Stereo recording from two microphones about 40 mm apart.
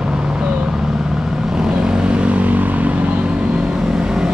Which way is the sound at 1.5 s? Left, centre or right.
Right.